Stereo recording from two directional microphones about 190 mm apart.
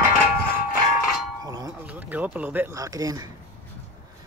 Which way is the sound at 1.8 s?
10° right (ahead or behind).